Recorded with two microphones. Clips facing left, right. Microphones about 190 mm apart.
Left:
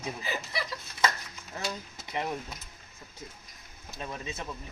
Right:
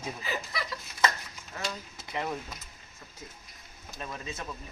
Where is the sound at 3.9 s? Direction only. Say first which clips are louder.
Left 1 dB; 20° left (ahead or behind).